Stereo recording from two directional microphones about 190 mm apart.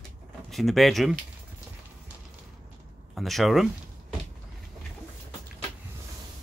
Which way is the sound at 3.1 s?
Centre (ahead or behind).